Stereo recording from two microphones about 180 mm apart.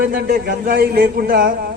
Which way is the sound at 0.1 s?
55° right (ahead or behind).